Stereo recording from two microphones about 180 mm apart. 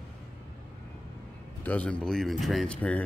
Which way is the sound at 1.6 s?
10° left (ahead or behind).